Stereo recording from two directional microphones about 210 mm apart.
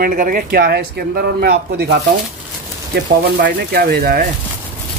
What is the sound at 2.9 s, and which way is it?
Speech, 55° right (ahead or behind).